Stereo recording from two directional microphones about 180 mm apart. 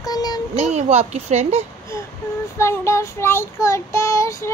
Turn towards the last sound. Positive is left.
turn(degrees=15)  # may be behind; listen again after turning